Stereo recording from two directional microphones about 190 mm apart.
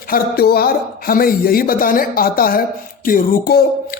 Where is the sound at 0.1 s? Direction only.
55° left (ahead or behind).